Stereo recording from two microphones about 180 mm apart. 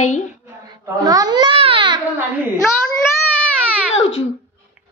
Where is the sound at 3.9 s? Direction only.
90° left.